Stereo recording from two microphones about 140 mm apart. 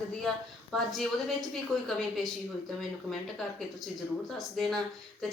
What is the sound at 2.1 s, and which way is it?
A woman's voice, centre (ahead or behind).